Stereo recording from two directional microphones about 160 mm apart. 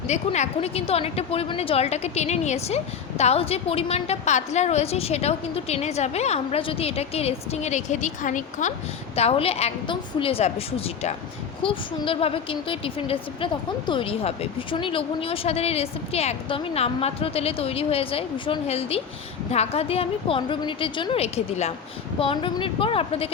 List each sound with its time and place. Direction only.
0.1 s a woman's voice: 40° left (ahead or behind)
9.1 s a woman's voice: 40° left (ahead or behind)